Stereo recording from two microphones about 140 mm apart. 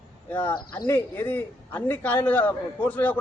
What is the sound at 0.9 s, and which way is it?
A man's voice, 15° left (ahead or behind).